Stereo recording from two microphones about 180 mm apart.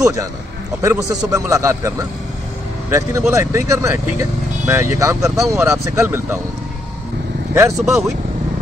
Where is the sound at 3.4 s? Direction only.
15° right (ahead or behind).